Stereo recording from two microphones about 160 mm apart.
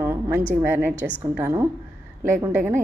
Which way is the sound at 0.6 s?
10° right (ahead or behind).